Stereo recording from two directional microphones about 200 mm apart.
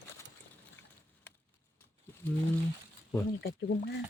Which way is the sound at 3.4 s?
55° left (ahead or behind).